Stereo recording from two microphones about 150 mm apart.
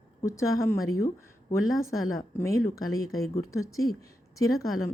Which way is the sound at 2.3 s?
20° left (ahead or behind).